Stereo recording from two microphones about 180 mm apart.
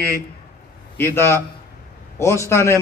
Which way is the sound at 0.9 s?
15° left (ahead or behind).